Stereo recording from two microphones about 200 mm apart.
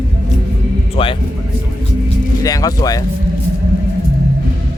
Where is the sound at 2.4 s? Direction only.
20° left (ahead or behind).